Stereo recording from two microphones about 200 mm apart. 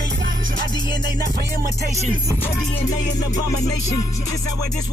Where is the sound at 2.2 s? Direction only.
10° left (ahead or behind).